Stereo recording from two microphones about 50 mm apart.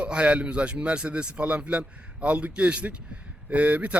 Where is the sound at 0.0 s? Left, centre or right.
Right.